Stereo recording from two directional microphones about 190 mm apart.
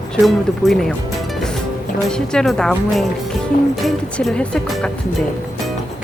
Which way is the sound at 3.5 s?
50° left (ahead or behind).